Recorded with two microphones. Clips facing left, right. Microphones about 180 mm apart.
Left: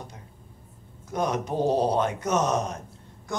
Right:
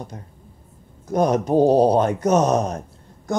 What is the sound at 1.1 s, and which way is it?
Speech, 40° right (ahead or behind).